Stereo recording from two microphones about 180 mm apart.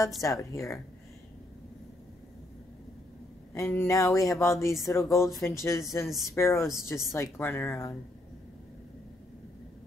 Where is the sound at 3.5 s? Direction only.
15° left (ahead or behind).